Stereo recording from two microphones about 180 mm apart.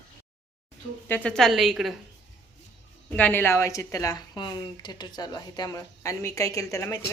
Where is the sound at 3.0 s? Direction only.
10° left (ahead or behind).